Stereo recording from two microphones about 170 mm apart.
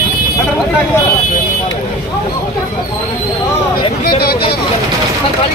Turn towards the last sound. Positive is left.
turn(degrees=65)  # may be behind; listen again after turning